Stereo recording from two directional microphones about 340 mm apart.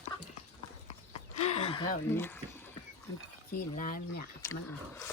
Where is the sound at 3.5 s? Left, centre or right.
Left.